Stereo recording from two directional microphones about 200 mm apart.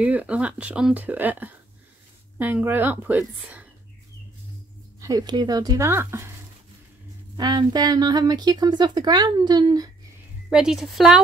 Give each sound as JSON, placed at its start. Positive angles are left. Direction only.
{"t": 0.0, "sound": "speech", "side_deg": -5}
{"t": 5.0, "sound": "speech", "side_deg": -20}
{"t": 7.3, "sound": "speech", "side_deg": -20}
{"t": 10.5, "sound": "speech", "side_deg": 0}